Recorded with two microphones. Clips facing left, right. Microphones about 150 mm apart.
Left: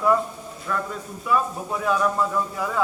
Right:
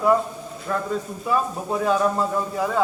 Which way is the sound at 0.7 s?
40° right (ahead or behind).